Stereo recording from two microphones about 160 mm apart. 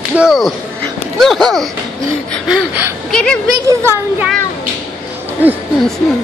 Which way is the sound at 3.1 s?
5° left (ahead or behind).